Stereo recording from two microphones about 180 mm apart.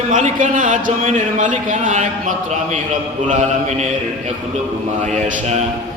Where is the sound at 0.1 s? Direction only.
45° right (ahead or behind).